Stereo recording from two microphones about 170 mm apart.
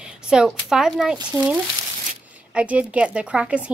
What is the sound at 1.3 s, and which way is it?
Speech, 15° right (ahead or behind).